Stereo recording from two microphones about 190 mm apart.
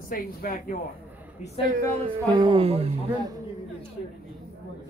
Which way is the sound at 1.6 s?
40° right (ahead or behind).